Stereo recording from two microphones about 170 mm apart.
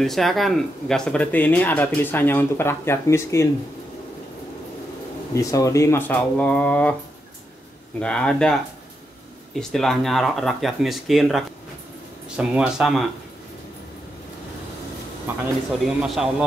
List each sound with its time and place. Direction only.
0.0 s speech: centre (ahead or behind)
5.3 s speech: 20° left (ahead or behind)
8.0 s speech: 5° left (ahead or behind)
9.6 s speech: centre (ahead or behind)
15.8 s speech: 5° right (ahead or behind)